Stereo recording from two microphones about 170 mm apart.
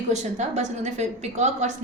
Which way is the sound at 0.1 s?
45° right (ahead or behind).